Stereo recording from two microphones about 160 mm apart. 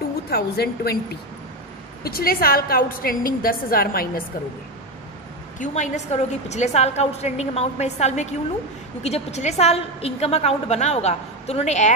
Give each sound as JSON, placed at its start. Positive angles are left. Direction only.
{"t": 0.3, "sound": "a woman's voice", "side_deg": 85}
{"t": 2.0, "sound": "a woman's voice", "side_deg": 70}
{"t": 5.6, "sound": "a woman's voice", "side_deg": 45}